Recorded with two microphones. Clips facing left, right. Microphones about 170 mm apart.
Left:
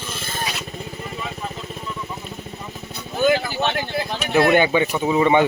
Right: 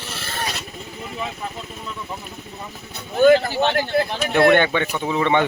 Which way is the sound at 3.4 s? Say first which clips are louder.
Right 3 dB; 60° right (ahead or behind).